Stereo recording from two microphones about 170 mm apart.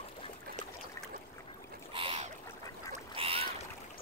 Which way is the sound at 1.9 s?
35° right (ahead or behind).